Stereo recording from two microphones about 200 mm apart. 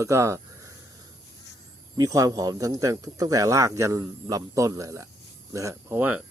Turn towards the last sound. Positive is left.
turn(degrees=-10)  # may be behind; listen again after turning